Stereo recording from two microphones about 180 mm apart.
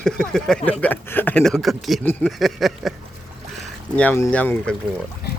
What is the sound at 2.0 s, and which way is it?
Speech, 10° left (ahead or behind).